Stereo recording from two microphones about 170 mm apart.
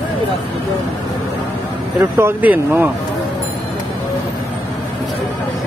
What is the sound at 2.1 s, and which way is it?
Speech, 10° right (ahead or behind).